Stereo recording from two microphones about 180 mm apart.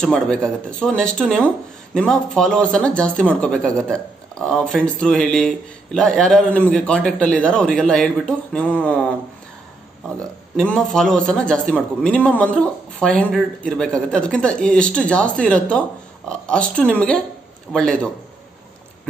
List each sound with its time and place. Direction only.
0.0 s a man's voice: 5° left (ahead or behind)
10.5 s a man's voice: 5° left (ahead or behind)